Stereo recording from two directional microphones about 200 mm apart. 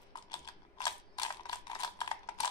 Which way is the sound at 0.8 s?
20° left (ahead or behind).